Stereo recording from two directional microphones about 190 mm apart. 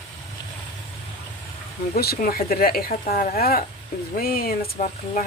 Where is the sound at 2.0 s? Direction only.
50° left (ahead or behind).